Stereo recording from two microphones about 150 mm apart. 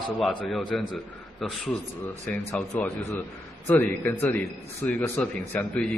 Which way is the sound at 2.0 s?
15° left (ahead or behind).